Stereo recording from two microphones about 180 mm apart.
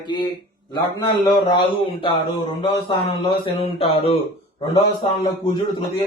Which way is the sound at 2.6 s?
25° left (ahead or behind).